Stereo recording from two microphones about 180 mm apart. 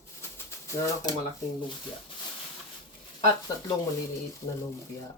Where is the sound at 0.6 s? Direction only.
15° left (ahead or behind).